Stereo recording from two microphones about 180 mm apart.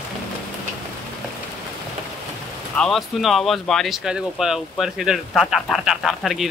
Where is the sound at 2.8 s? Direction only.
Centre (ahead or behind).